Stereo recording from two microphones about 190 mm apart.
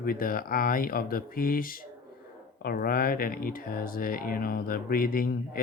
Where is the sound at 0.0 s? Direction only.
50° left (ahead or behind).